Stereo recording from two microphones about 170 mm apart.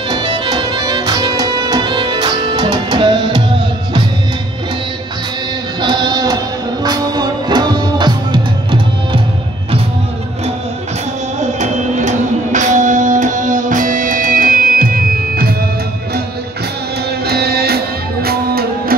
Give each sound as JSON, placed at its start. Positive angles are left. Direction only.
{"t": 0.1, "sound": "music", "side_deg": -25}
{"t": 5.8, "sound": "music", "side_deg": -25}
{"t": 11.6, "sound": "music", "side_deg": -45}
{"t": 17.2, "sound": "music", "side_deg": -70}